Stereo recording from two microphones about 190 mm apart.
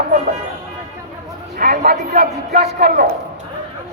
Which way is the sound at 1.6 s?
50° right (ahead or behind).